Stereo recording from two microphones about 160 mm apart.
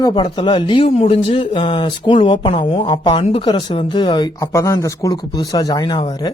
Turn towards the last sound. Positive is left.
turn(degrees=25)  # may be behind; listen again after turning